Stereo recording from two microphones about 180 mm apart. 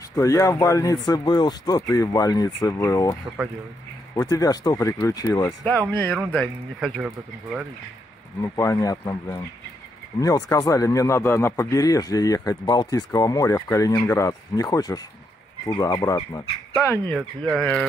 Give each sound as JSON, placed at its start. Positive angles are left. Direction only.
{"t": 0.1, "sound": "speech", "side_deg": 15}
{"t": 8.4, "sound": "speech", "side_deg": 15}